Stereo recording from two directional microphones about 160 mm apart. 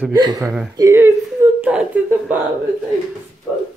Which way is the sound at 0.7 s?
20° right (ahead or behind).